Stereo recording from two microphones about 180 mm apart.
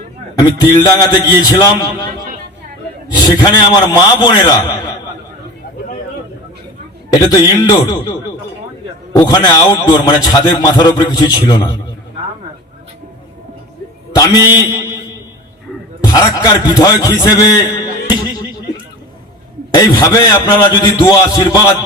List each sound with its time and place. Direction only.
0.3 s a man's voice: 20° left (ahead or behind)
3.2 s a man's voice: 20° left (ahead or behind)
7.1 s a man's voice: 20° left (ahead or behind)
9.1 s a man's voice: 20° left (ahead or behind)
14.1 s a man's voice: 20° left (ahead or behind)
16.1 s a man's voice: 20° left (ahead or behind)
19.7 s a man's voice: 15° left (ahead or behind)